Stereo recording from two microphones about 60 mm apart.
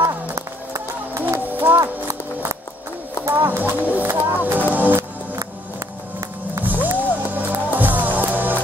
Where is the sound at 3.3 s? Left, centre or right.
Right.